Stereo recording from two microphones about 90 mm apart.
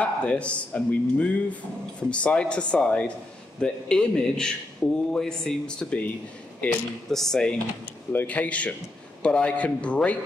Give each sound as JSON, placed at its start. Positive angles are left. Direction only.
{"t": 0.0, "sound": "speech", "side_deg": 15}
{"t": 8.1, "sound": "speech", "side_deg": 20}